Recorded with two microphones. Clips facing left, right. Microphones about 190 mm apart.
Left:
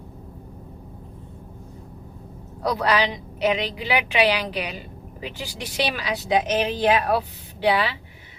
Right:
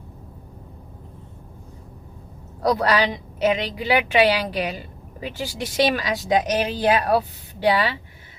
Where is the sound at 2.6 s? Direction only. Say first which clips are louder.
Right 2 dB; 45° right (ahead or behind).